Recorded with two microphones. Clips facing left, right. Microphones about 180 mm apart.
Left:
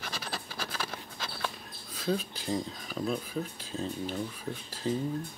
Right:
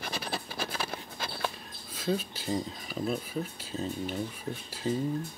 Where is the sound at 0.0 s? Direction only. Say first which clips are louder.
Right 3 dB; 10° right (ahead or behind).